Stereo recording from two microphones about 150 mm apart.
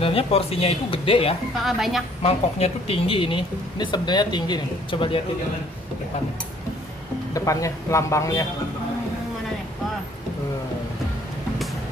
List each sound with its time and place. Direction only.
0.0 s speech: 40° left (ahead or behind)
1.6 s a woman's voice: centre (ahead or behind)
2.2 s speech: 40° left (ahead or behind)
7.3 s a man's voice: 20° left (ahead or behind)